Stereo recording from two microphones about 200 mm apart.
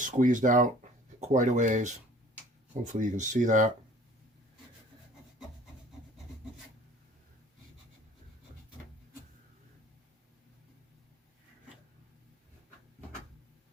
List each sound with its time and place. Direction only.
0.0 s speech: 40° right (ahead or behind)